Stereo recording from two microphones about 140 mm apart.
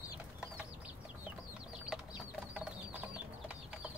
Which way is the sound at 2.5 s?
5° right (ahead or behind).